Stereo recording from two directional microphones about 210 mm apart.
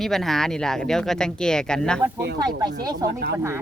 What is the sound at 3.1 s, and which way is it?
Speech, 50° right (ahead or behind).